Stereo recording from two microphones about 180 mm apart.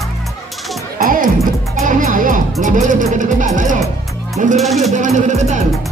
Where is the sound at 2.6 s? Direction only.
45° right (ahead or behind).